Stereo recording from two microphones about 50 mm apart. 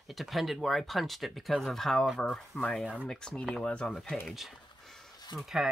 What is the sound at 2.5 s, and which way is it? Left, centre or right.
Speech, left.